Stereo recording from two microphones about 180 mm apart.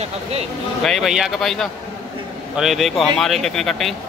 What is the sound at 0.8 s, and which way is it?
Speech, centre (ahead or behind).